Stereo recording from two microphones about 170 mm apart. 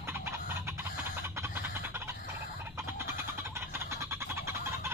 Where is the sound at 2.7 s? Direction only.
15° right (ahead or behind).